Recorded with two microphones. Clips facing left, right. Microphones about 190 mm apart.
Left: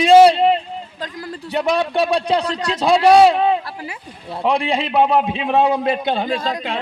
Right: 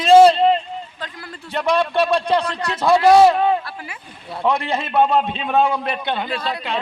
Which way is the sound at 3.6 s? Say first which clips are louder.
Left 3 dB; 35° left (ahead or behind).